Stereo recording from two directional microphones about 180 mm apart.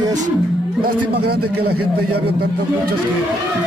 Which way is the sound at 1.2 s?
60° right (ahead or behind).